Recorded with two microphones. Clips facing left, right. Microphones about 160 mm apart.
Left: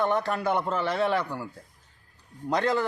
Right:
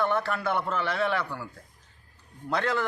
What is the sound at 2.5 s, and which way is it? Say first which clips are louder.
Speech: left 3 dB; 15° left (ahead or behind).